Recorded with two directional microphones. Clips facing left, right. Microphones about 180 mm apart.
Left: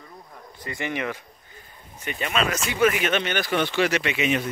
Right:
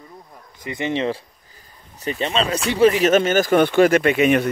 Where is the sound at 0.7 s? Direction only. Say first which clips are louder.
Right 6 dB; 20° right (ahead or behind).